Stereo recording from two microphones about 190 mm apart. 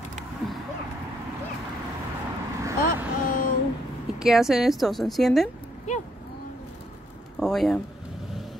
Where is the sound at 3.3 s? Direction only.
45° left (ahead or behind).